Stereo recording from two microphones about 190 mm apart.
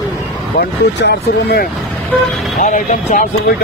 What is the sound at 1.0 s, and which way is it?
Speech, 60° left (ahead or behind).